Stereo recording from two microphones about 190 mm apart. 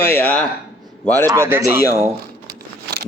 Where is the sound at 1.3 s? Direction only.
15° right (ahead or behind).